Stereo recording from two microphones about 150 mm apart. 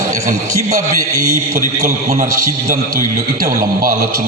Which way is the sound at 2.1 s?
65° right (ahead or behind).